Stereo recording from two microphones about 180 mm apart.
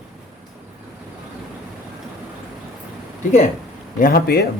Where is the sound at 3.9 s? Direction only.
55° left (ahead or behind).